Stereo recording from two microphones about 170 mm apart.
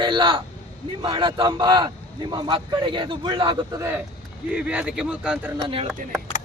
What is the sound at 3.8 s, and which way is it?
Speech, 15° right (ahead or behind).